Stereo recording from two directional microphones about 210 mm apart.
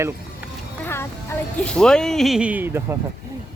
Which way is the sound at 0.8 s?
10° left (ahead or behind).